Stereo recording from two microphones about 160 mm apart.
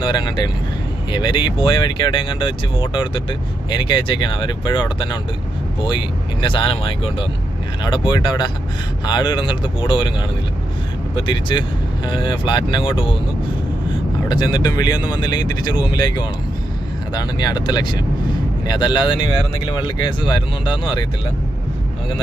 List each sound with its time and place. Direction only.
0.0 s speech: 30° left (ahead or behind)
11.1 s speech: 30° left (ahead or behind)
14.3 s speech: 30° left (ahead or behind)